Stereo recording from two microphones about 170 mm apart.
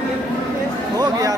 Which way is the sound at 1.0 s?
20° right (ahead or behind).